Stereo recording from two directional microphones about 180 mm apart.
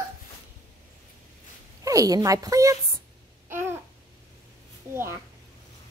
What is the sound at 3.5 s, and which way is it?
Babbling, 15° right (ahead or behind).